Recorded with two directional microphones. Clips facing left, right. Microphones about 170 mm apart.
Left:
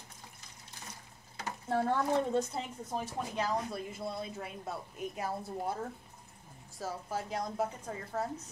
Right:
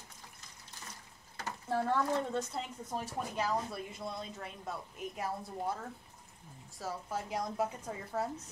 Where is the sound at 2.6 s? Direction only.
Centre (ahead or behind).